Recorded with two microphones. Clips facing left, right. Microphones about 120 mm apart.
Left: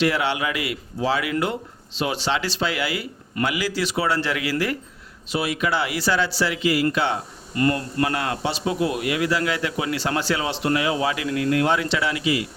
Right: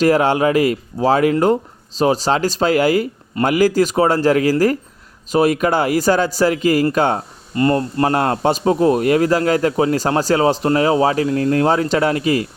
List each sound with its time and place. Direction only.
0.0 s speech: 45° right (ahead or behind)
7.5 s a man's voice: 30° right (ahead or behind); by 12.5 s 45° right (ahead or behind)